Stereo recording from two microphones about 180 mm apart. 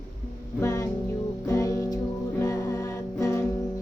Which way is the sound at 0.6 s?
20° left (ahead or behind).